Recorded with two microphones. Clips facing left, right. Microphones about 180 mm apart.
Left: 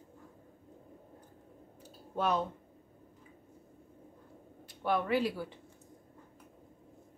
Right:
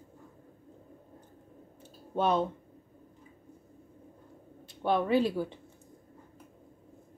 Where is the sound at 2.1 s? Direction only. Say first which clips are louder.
Right 4 dB; 30° right (ahead or behind).